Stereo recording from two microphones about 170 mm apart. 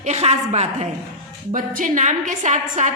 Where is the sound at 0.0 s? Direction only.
40° right (ahead or behind).